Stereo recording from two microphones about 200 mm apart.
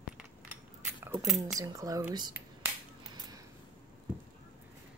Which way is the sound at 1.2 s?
Centre (ahead or behind).